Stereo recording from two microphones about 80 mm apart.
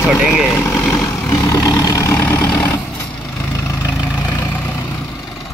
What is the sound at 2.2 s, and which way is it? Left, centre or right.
Vehicle, left.